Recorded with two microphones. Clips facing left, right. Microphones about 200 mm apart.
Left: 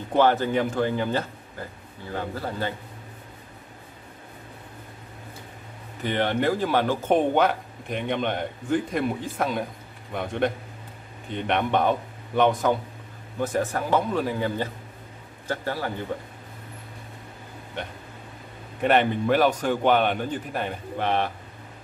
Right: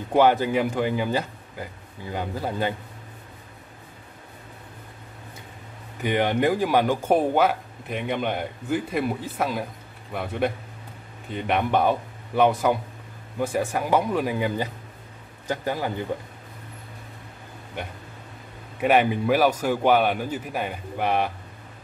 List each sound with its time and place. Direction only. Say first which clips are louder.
0.1 s speech: right 2 dB; 10° right (ahead or behind)
6.0 s speech: right 2 dB; 15° right (ahead or behind)
18.8 s speech: right 1 dB; 5° right (ahead or behind)